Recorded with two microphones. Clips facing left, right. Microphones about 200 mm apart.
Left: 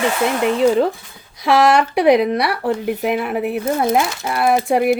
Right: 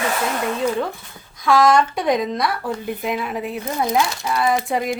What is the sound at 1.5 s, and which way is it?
Speech, 70° left (ahead or behind).